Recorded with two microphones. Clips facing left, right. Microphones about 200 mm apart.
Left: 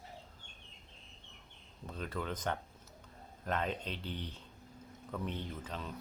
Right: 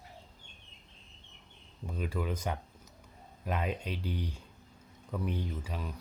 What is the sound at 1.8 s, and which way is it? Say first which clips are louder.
Speech: right 4 dB; 10° right (ahead or behind).